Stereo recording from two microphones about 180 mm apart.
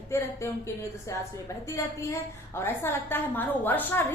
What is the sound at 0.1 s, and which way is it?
A woman's voice, 15° left (ahead or behind).